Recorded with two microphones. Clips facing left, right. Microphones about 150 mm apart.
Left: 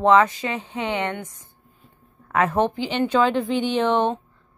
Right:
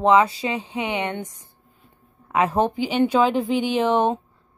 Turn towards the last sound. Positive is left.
turn(degrees=-10)  # may be behind; listen again after turning